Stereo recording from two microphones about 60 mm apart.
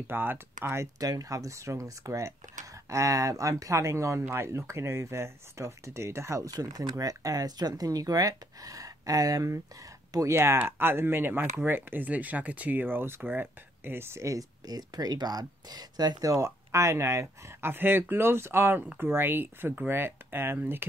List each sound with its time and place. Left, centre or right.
0.1 s speech: right
0.9 s speech: right
6.5 s speech: right
10.2 s speech: right
14.2 s speech: right